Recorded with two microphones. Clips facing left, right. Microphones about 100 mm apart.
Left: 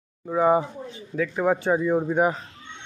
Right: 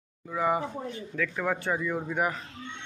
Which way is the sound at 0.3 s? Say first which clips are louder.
Left 7 dB; 35° left (ahead or behind).